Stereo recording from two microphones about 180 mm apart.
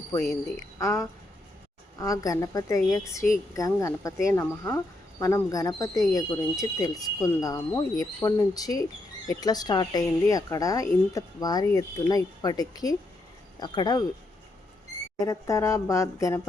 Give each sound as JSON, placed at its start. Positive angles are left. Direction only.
{"t": 0.1, "sound": "a woman's voice", "side_deg": 15}
{"t": 15.2, "sound": "a woman's voice", "side_deg": 20}